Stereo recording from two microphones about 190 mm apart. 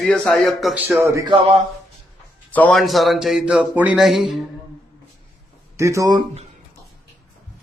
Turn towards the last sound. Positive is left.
turn(degrees=-20)  # may be behind; listen again after turning